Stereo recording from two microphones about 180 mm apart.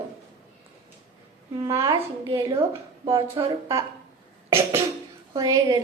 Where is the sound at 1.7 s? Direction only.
30° right (ahead or behind).